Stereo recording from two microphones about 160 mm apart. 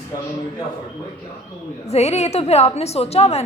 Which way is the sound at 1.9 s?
40° left (ahead or behind).